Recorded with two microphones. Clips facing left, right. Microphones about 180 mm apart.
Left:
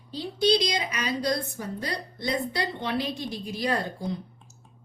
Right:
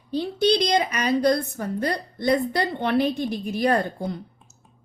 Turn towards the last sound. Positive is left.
turn(degrees=-55)  # may be behind; listen again after turning